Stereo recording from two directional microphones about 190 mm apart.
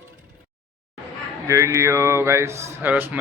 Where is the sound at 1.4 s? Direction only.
15° right (ahead or behind).